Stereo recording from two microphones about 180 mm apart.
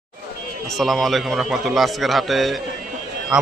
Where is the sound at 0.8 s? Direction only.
Centre (ahead or behind).